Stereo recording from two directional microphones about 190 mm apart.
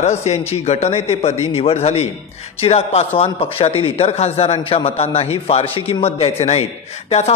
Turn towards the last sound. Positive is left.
turn(degrees=35)  # may be behind; listen again after turning